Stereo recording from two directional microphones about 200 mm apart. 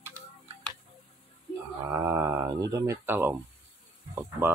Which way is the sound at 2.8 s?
15° right (ahead or behind).